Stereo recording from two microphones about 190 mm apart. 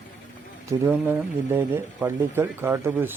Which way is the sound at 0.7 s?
10° right (ahead or behind).